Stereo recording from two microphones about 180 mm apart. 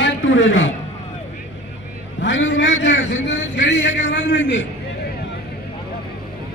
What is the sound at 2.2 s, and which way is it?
A man's voice, 90° left.